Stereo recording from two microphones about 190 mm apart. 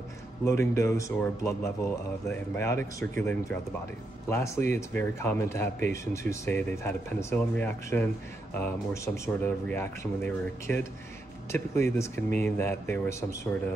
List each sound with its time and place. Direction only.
0.5 s speech: 15° left (ahead or behind)